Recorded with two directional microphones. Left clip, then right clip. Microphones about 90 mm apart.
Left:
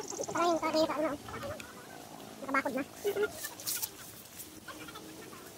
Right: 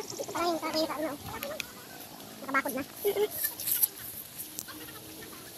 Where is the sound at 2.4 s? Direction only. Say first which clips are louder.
Right 2 dB; 15° right (ahead or behind).